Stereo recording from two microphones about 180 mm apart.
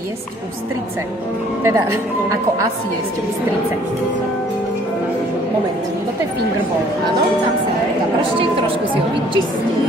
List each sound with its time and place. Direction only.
1.6 s speech: 15° right (ahead or behind)
8.4 s a woman's voice: 30° right (ahead or behind)